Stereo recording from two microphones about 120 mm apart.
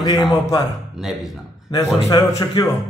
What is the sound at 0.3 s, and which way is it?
Speech, 30° left (ahead or behind).